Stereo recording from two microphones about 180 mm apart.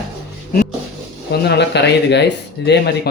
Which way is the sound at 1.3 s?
65° left (ahead or behind).